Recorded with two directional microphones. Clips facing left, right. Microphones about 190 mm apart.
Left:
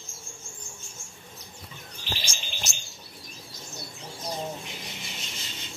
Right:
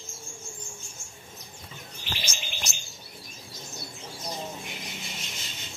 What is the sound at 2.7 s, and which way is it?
Bird, centre (ahead or behind).